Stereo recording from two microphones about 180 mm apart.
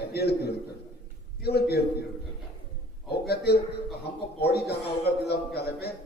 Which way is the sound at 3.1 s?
65° left (ahead or behind).